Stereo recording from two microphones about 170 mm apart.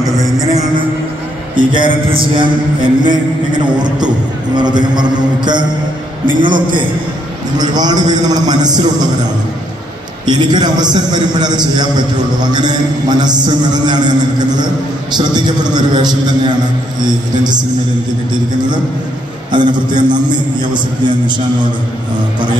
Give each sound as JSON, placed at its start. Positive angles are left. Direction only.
{"t": 1.6, "sound": "a man's voice", "side_deg": -30}
{"t": 10.2, "sound": "a man's voice", "side_deg": -25}
{"t": 19.5, "sound": "a man's voice", "side_deg": -25}